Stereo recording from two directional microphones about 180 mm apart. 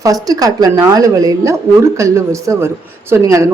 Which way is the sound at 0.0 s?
20° right (ahead or behind).